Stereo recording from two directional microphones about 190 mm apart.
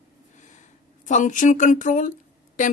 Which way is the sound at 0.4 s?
40° left (ahead or behind).